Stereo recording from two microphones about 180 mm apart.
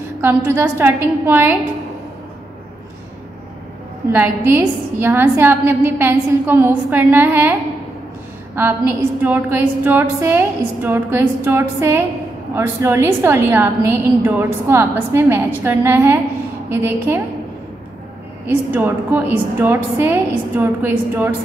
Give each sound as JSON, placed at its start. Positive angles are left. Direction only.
{"t": 0.2, "sound": "a woman's voice", "side_deg": -15}
{"t": 4.1, "sound": "a woman's voice", "side_deg": -10}
{"t": 8.5, "sound": "a woman's voice", "side_deg": -10}
{"t": 18.7, "sound": "a woman's voice", "side_deg": -10}